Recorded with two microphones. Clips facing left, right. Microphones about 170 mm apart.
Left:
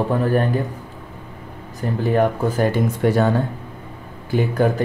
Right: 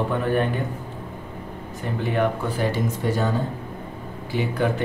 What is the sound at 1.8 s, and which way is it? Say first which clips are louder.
Speech: left 5 dB; 40° left (ahead or behind).